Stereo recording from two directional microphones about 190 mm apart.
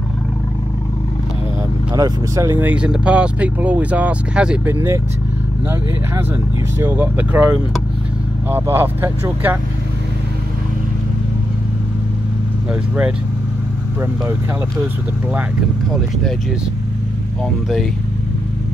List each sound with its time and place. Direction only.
2.0 s speech: 15° right (ahead or behind)
6.8 s speech: 10° right (ahead or behind)